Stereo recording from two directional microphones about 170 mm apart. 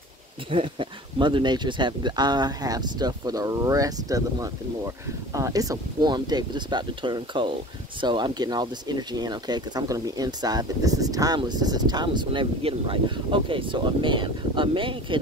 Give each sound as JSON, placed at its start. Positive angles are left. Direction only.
{"t": 0.5, "sound": "speech", "side_deg": -30}